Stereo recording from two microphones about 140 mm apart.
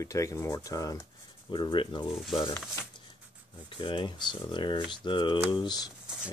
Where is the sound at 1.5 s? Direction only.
35° left (ahead or behind).